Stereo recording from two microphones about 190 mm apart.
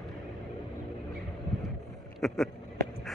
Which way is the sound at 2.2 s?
Centre (ahead or behind).